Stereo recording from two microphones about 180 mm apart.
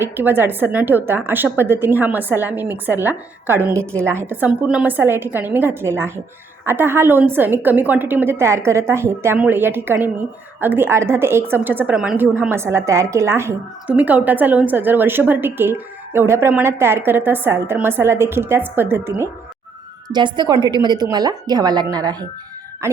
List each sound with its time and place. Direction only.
0.0 s a woman's voice: 10° right (ahead or behind)
20.1 s a woman's voice: 25° right (ahead or behind)